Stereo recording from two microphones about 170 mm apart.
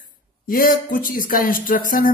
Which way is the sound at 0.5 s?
55° left (ahead or behind).